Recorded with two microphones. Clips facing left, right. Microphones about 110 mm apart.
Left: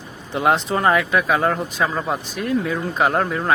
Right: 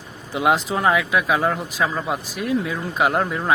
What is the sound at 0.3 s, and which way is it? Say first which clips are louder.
Speech: left 1 dB; 5° right (ahead or behind).